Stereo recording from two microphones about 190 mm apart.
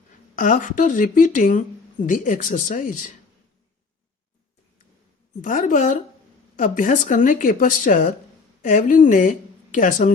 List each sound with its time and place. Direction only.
0.3 s a woman's voice: 45° left (ahead or behind)
5.4 s a woman's voice: 45° left (ahead or behind)